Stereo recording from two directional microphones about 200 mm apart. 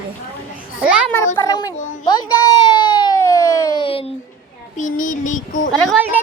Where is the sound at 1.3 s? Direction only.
15° left (ahead or behind).